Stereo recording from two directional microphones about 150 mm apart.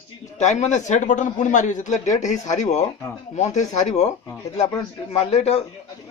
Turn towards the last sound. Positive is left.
turn(degrees=45)  # may be behind; listen again after turning